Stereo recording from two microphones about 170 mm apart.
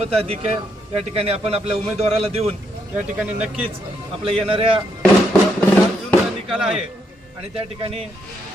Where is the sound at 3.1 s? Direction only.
5° right (ahead or behind).